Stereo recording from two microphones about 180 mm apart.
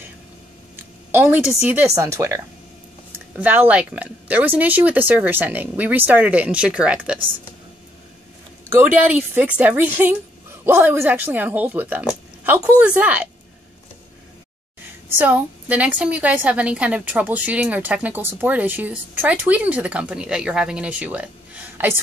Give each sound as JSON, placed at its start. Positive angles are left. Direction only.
{"t": 0.7, "sound": "a woman's voice", "side_deg": -15}
{"t": 8.7, "sound": "a woman's voice", "side_deg": -10}
{"t": 15.1, "sound": "a woman's voice", "side_deg": -10}